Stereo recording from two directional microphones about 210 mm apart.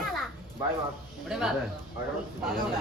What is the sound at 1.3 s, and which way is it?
Speech, centre (ahead or behind).